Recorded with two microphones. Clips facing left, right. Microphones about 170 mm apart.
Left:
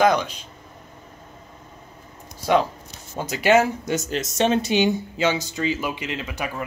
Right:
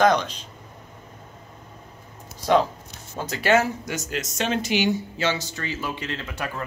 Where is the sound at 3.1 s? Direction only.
15° left (ahead or behind).